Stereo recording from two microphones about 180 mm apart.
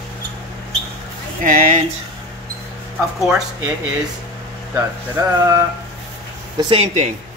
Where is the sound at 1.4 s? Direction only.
50° right (ahead or behind).